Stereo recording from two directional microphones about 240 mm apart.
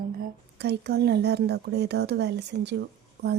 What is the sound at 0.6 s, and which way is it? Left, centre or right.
Speech, right.